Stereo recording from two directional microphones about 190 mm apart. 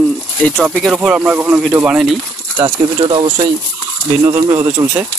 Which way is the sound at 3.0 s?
25° right (ahead or behind).